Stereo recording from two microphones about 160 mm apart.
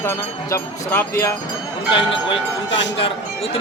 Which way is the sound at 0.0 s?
15° left (ahead or behind).